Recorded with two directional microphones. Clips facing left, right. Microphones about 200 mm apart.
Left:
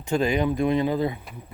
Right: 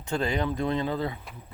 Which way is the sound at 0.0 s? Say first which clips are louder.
Left 5 dB; 10° left (ahead or behind).